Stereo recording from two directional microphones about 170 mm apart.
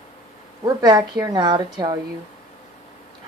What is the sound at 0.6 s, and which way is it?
A woman's voice, 25° right (ahead or behind).